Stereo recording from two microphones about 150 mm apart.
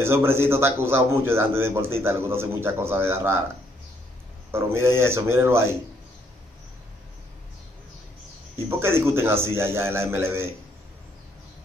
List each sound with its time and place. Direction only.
0.0 s a man's voice: 15° right (ahead or behind)
4.5 s a man's voice: 15° right (ahead or behind)
8.6 s a man's voice: 15° right (ahead or behind)